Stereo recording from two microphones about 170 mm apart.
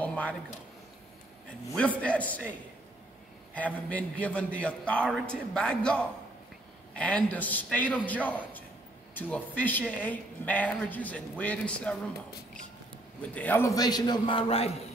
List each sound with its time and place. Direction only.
0.0 s a sound: 10° left (ahead or behind)
1.8 s a woman's voice: 5° left (ahead or behind)
3.5 s a woman's voice: 10° left (ahead or behind)
13.3 s a man's voice: 10° left (ahead or behind); by 14.8 s 35° left (ahead or behind)